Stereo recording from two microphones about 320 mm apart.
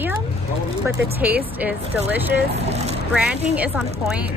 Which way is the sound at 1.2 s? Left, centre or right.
Centre.